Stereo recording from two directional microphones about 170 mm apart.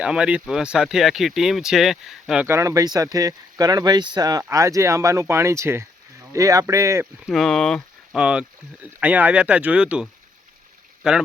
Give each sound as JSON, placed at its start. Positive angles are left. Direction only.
{"t": 0.0, "sound": "speech", "side_deg": -5}
{"t": 2.5, "sound": "speech", "side_deg": -20}
{"t": 7.3, "sound": "speech", "side_deg": 0}